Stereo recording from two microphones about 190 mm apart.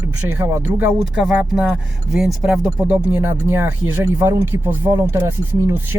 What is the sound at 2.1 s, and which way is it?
Speech, 5° right (ahead or behind).